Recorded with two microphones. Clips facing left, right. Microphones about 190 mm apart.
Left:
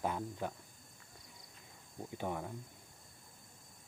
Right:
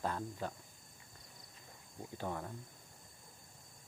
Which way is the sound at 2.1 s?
15° left (ahead or behind).